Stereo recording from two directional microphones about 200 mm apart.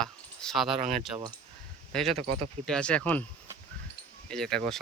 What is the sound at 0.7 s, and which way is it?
Speech, 35° right (ahead or behind).